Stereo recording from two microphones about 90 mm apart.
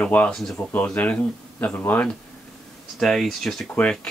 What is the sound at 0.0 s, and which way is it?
Speech, 15° left (ahead or behind).